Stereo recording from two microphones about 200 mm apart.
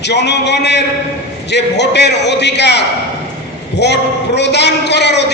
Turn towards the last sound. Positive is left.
turn(degrees=60)  # may be behind; listen again after turning